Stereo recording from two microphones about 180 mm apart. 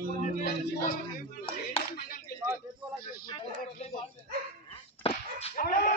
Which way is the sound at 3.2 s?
30° left (ahead or behind).